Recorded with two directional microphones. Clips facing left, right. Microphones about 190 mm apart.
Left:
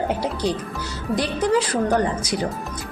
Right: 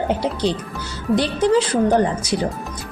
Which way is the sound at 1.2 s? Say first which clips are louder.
Right 3 dB; 30° right (ahead or behind).